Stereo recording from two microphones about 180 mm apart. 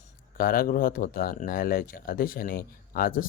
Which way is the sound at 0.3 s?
55° left (ahead or behind).